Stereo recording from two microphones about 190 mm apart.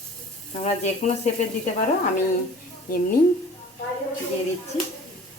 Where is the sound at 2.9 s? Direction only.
50° left (ahead or behind).